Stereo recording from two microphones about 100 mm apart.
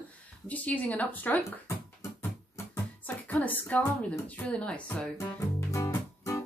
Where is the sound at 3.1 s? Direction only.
15° left (ahead or behind).